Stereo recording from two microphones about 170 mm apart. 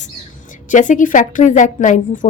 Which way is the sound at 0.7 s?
50° left (ahead or behind).